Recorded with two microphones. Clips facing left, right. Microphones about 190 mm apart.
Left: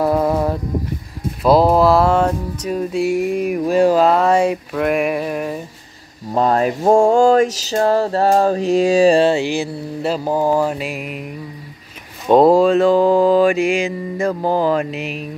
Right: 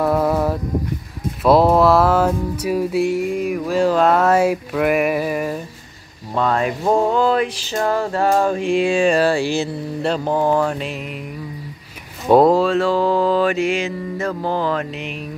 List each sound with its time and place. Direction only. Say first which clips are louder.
0.0 s a sound: left 1 dB; centre (ahead or behind)
1.4 s music: left 1 dB; centre (ahead or behind)
3.5 s mantra: left 4 dB; 20° left (ahead or behind)
4.0 s music: left 1 dB; centre (ahead or behind)
6.3 s a sound: left 3 dB; 40° left (ahead or behind); by 9.7 s 20° left (ahead or behind)
10.0 s mantra: left 1 dB; 5° left (ahead or behind)
12.4 s mantra: left 4 dB; 15° left (ahead or behind)